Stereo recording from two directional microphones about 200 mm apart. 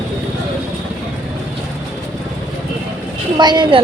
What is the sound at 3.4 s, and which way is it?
Speech, 20° right (ahead or behind).